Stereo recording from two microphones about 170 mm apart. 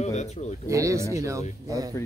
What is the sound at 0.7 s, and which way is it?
Speech, 20° right (ahead or behind).